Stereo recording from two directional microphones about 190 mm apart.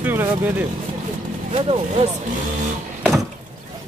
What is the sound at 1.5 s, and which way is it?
Speech, 30° right (ahead or behind).